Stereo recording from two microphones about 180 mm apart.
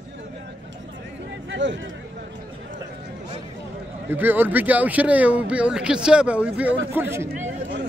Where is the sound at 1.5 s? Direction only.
85° right.